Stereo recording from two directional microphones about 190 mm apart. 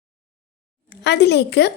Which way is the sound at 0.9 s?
65° left (ahead or behind).